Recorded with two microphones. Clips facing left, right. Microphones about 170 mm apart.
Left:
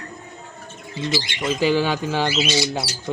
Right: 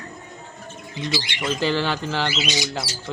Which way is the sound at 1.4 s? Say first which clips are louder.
Left 4 dB; 10° left (ahead or behind).